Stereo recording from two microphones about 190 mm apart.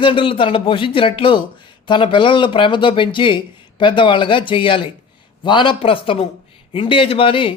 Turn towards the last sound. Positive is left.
turn(degrees=30)  # may be behind; listen again after turning